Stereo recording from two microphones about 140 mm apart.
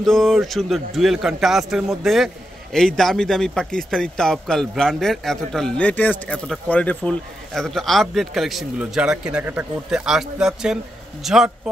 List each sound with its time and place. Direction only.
0.0 s a man's voice: centre (ahead or behind)